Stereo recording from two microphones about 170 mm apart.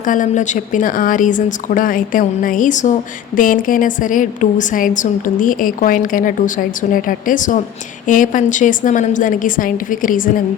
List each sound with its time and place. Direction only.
0.0 s a woman's voice: 50° left (ahead or behind)